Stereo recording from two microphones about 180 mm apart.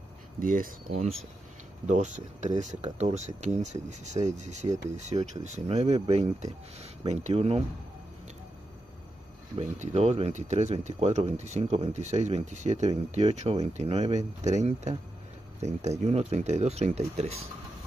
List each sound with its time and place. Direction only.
0.4 s speech: 50° right (ahead or behind)
9.6 s speech: 35° right (ahead or behind)